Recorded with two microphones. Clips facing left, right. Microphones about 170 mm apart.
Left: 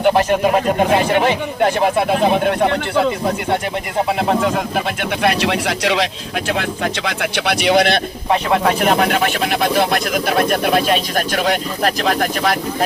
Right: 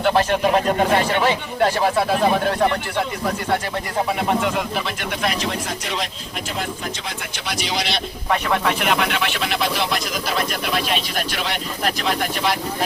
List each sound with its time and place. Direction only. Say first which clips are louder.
0.0 s speech: left 4 dB; 15° left (ahead or behind); by 4.5 s 35° left (ahead or behind)
4.9 s speech: left 6 dB; 70° left (ahead or behind)
8.3 s speech: left 5 dB; 35° left (ahead or behind)